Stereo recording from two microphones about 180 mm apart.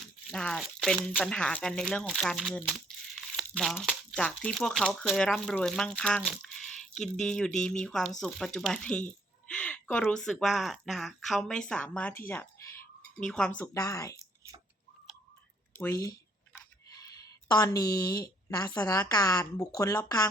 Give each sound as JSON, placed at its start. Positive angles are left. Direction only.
{"t": 0.3, "sound": "speech", "side_deg": 0}
{"t": 12.3, "sound": "a sound", "side_deg": 10}
{"t": 13.7, "sound": "a woman's voice", "side_deg": 20}
{"t": 15.8, "sound": "speech", "side_deg": 15}
{"t": 16.6, "sound": "a sound", "side_deg": 20}
{"t": 17.5, "sound": "a woman's voice", "side_deg": 20}